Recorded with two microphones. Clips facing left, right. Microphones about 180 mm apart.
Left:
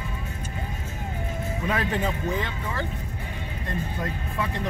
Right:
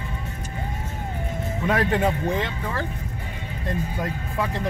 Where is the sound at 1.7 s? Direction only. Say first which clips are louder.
Right 5 dB; 60° right (ahead or behind).